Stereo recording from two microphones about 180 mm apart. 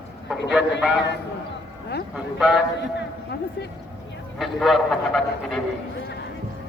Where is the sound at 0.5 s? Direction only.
5° right (ahead or behind).